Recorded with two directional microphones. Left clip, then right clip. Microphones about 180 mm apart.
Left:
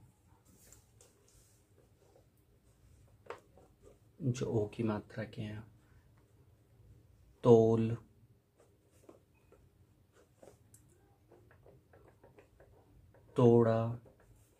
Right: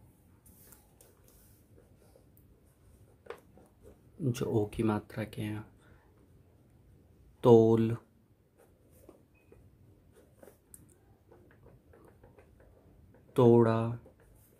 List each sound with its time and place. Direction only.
4.3 s speech: 35° right (ahead or behind)
7.3 s speech: 40° right (ahead or behind)
13.3 s speech: 40° right (ahead or behind)